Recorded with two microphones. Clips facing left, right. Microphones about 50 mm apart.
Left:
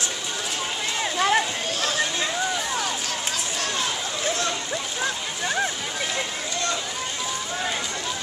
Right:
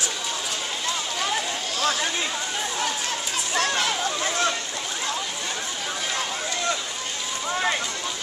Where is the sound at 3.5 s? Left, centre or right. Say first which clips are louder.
Right 7 dB; right.